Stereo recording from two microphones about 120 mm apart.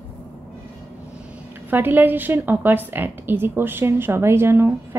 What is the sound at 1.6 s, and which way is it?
A woman's voice, 15° right (ahead or behind).